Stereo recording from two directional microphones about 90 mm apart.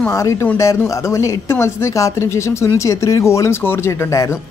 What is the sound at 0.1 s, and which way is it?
Speech, 35° left (ahead or behind).